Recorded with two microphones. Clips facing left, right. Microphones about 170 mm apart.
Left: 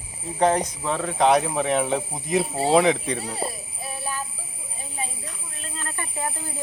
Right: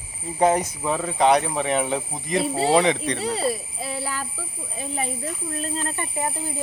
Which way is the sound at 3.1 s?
90° right.